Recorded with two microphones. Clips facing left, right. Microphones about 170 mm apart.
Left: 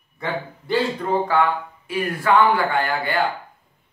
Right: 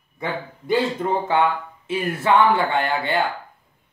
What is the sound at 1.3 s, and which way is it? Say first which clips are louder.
Speech: even; 25° right (ahead or behind).